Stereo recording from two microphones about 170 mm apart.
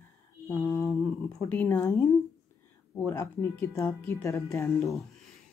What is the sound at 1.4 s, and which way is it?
Speech, 10° left (ahead or behind).